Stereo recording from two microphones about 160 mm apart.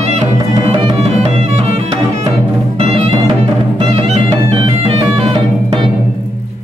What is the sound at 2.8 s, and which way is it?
Music, 40° right (ahead or behind).